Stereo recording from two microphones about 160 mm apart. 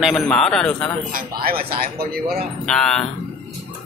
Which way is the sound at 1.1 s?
65° right (ahead or behind).